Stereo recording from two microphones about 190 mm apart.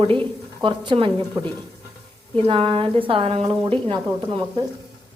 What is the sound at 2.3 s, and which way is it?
A woman's voice, 30° right (ahead or behind).